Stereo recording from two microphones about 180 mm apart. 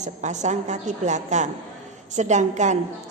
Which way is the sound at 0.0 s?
40° right (ahead or behind).